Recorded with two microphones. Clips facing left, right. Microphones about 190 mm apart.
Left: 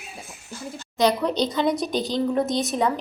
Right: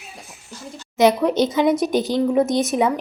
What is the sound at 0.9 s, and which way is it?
A woman's voice, 20° right (ahead or behind).